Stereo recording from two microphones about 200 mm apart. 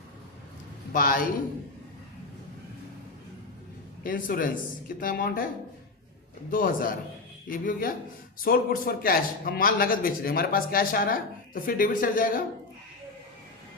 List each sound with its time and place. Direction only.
0.9 s speech: 45° left (ahead or behind)
4.0 s speech: 45° left (ahead or behind)
6.5 s speech: 45° left (ahead or behind)